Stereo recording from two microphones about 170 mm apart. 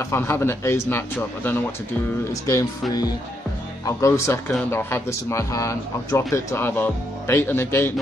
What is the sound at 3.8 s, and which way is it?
Speech, 15° left (ahead or behind).